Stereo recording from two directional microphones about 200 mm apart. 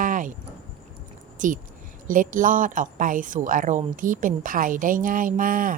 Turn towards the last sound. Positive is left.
turn(degrees=-45)  # may be behind; listen again after turning